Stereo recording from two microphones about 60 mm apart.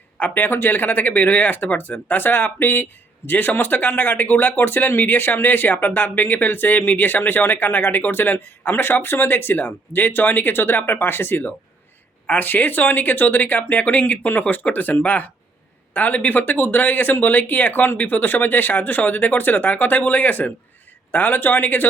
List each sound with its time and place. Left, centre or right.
0.2 s speech: left